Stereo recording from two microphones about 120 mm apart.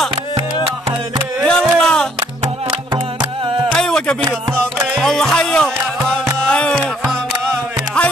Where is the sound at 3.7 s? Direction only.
5° left (ahead or behind).